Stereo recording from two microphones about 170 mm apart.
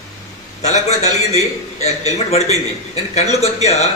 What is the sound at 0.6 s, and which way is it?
A man's voice, 40° left (ahead or behind).